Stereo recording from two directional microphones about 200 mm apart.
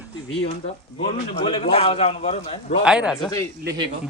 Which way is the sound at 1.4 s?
30° left (ahead or behind).